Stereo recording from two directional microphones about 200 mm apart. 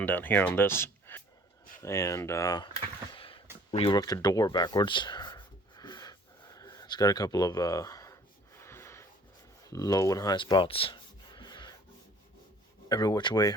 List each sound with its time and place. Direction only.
0.0 s speech: 10° left (ahead or behind)
3.1 s a sound: 25° left (ahead or behind)
12.9 s speech: 20° left (ahead or behind)